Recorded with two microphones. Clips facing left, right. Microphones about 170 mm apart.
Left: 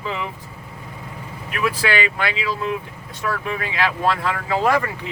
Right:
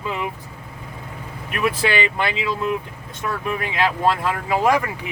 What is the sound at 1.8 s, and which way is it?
Speech, 25° right (ahead or behind).